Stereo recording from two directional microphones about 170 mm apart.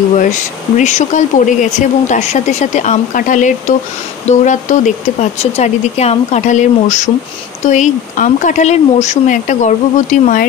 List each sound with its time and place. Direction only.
0.2 s speech: 45° left (ahead or behind)